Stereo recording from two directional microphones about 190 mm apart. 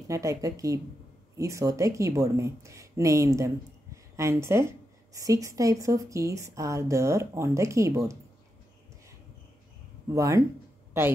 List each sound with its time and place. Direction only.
0.1 s speech: 15° right (ahead or behind)
10.0 s speech: 15° right (ahead or behind)
10.9 s a sound: 10° right (ahead or behind)